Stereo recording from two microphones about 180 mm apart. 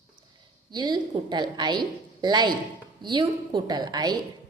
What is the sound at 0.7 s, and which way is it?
A woman's voice, 25° right (ahead or behind).